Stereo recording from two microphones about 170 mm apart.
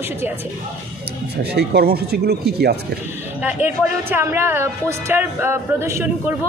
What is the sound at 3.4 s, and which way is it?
Speech, 10° right (ahead or behind).